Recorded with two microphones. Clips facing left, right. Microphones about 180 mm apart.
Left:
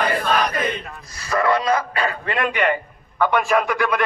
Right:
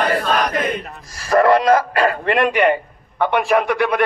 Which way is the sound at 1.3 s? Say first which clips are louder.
Right 6 dB; 50° right (ahead or behind).